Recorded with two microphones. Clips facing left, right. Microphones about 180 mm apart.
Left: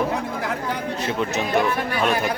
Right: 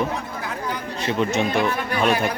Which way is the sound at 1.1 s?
Centre (ahead or behind).